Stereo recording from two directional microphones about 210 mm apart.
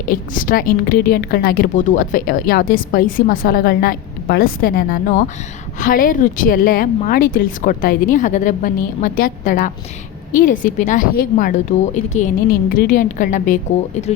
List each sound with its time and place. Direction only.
0.1 s a woman's voice: 40° left (ahead or behind)